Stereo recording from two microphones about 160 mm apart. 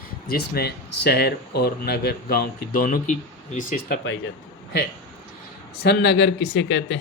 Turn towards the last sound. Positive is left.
turn(degrees=90)